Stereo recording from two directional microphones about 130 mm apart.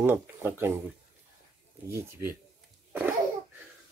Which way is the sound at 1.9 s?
15° right (ahead or behind).